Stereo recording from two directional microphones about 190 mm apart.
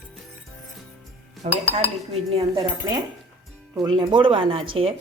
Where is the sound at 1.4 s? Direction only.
35° right (ahead or behind).